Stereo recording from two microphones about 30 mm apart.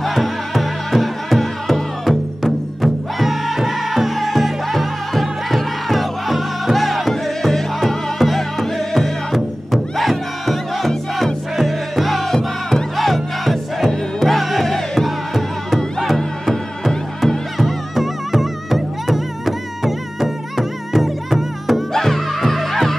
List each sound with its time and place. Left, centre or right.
0.0 s music: centre
21.9 s music: centre